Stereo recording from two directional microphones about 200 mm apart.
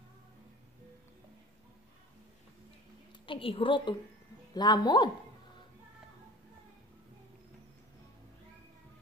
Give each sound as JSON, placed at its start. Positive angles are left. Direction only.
{"t": 3.3, "sound": "a woman's voice", "side_deg": 25}